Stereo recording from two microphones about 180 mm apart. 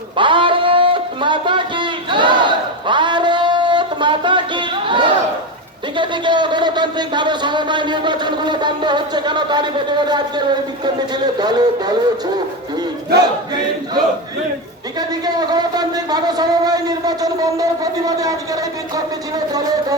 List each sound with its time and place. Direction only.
0.2 s music: 30° right (ahead or behind)
6.0 s a man's voice: 25° right (ahead or behind)
13.1 s a man's voice: 25° right (ahead or behind)